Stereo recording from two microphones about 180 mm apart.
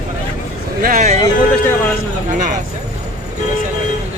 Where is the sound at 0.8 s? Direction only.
50° right (ahead or behind).